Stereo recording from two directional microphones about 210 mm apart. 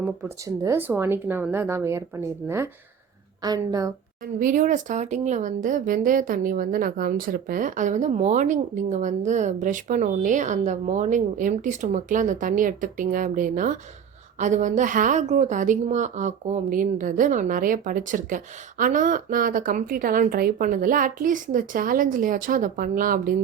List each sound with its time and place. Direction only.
0.0 s speech: 15° right (ahead or behind)
3.4 s speech: 20° right (ahead or behind)
4.4 s a woman's voice: 40° right (ahead or behind)